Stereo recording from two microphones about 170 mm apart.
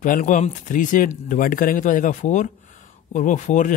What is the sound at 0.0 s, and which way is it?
Speech, 50° left (ahead or behind).